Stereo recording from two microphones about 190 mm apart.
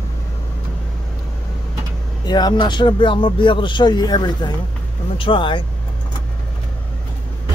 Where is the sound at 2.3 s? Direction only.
20° left (ahead or behind).